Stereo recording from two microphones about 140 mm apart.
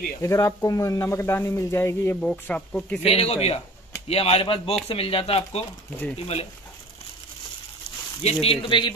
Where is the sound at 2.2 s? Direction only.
10° left (ahead or behind).